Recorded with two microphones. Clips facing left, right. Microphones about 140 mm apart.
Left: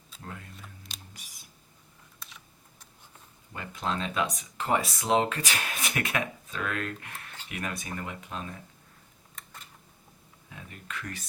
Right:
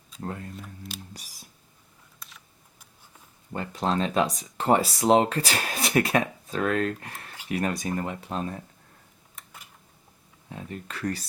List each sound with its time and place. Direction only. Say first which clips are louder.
0.2 s speech: right 9 dB; 40° right (ahead or behind)
1.1 s a sound: right 6 dB; 35° right (ahead or behind)
2.1 s computer keyboard: even; centre (ahead or behind)
3.5 s speech: right 6 dB; 35° right (ahead or behind)
9.3 s a sound: even; 10° right (ahead or behind)
10.5 s speech: right 5 dB; 35° right (ahead or behind)